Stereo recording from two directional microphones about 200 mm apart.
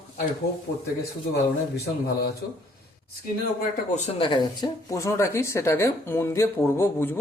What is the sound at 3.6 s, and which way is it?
Speech, 35° left (ahead or behind).